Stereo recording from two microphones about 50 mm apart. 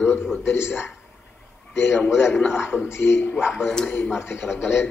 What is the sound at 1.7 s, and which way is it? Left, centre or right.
A man's voice, left.